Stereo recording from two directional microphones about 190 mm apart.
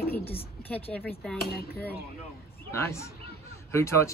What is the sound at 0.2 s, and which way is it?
Speech, 30° left (ahead or behind).